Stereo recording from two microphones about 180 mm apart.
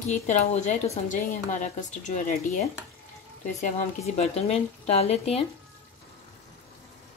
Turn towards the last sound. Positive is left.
turn(degrees=35)  # may be behind; listen again after turning